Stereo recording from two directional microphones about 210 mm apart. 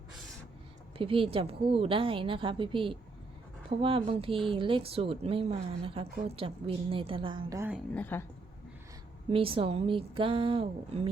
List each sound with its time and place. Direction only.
0.9 s a woman's voice: 25° right (ahead or behind)
7.9 s a woman's voice: 10° left (ahead or behind)
9.3 s a woman's voice: 25° right (ahead or behind)